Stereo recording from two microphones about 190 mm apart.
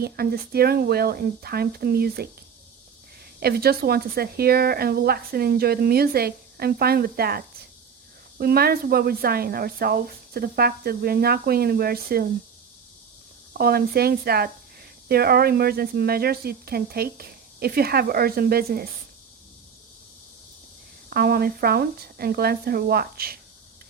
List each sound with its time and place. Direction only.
0.0 s speech: 55° right (ahead or behind)
3.4 s speech: 55° right (ahead or behind)
13.6 s speech: 55° right (ahead or behind)
21.1 s speech: 55° right (ahead or behind)